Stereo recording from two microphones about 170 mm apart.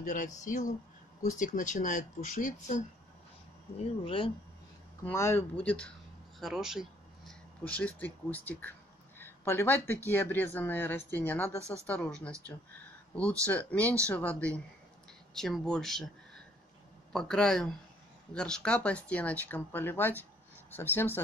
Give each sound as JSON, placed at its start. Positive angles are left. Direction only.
{"t": 0.0, "sound": "speech", "side_deg": 45}
{"t": 3.7, "sound": "speech", "side_deg": 30}
{"t": 5.0, "sound": "speech", "side_deg": 15}
{"t": 6.4, "sound": "a sound", "side_deg": 0}
{"t": 7.6, "sound": "speech", "side_deg": 10}
{"t": 13.5, "sound": "speech", "side_deg": 10}
{"t": 17.1, "sound": "speech", "side_deg": 5}